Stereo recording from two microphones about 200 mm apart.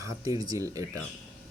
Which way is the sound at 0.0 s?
20° right (ahead or behind).